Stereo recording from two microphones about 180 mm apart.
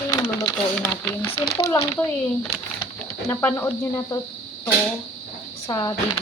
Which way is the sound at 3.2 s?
15° left (ahead or behind).